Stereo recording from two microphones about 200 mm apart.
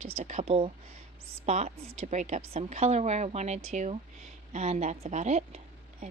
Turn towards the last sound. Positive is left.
turn(degrees=-35)  # may be behind; listen again after turning